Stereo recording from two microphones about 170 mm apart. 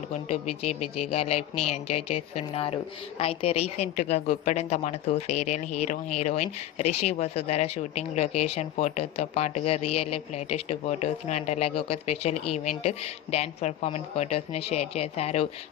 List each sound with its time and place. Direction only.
0.1 s speech: 40° left (ahead or behind)